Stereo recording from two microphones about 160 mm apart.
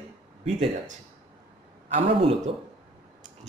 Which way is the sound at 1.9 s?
40° right (ahead or behind).